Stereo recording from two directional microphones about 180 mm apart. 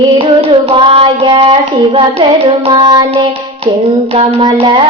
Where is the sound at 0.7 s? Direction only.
30° right (ahead or behind).